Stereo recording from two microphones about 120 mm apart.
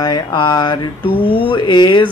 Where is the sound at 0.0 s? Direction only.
35° left (ahead or behind).